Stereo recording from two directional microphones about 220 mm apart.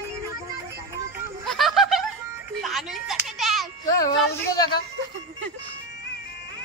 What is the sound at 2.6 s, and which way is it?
Music, centre (ahead or behind).